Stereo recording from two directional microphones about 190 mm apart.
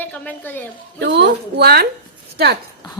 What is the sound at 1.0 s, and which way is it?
Speech, 65° right (ahead or behind).